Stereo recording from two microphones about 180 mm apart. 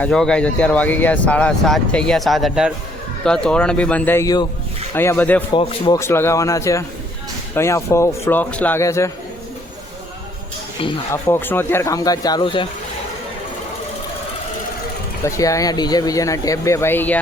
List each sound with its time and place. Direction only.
0.0 s speech: 5° left (ahead or behind)
5.5 s speech: 25° left (ahead or behind)
6.0 s speech: 15° left (ahead or behind)
11.1 s speech: 10° left (ahead or behind)
15.2 s speech: 15° left (ahead or behind)